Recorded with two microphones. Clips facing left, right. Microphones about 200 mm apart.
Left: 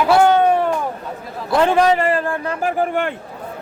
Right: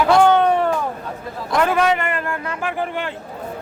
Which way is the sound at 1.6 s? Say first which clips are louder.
Left 3 dB; 30° left (ahead or behind).